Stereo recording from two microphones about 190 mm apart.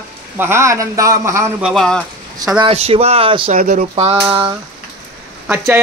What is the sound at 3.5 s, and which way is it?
Speech, 45° right (ahead or behind).